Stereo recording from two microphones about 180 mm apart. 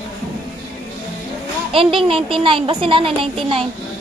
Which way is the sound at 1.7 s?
30° right (ahead or behind).